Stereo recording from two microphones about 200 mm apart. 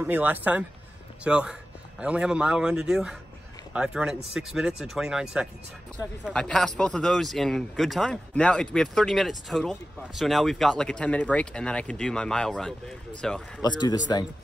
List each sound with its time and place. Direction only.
0.0 s speech: 10° right (ahead or behind)
13.6 s speech: 20° left (ahead or behind)